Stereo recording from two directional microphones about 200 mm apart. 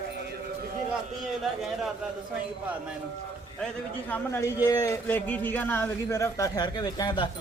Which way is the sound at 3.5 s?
5° left (ahead or behind).